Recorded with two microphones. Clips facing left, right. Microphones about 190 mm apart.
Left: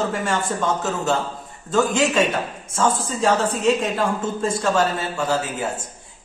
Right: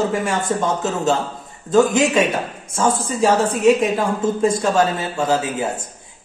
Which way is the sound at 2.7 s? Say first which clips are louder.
Right 2 dB; 10° right (ahead or behind).